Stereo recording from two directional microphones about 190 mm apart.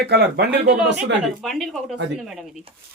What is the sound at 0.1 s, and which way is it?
Speech, 60° right (ahead or behind).